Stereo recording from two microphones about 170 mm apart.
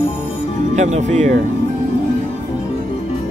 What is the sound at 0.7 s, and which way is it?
Speech, 40° right (ahead or behind).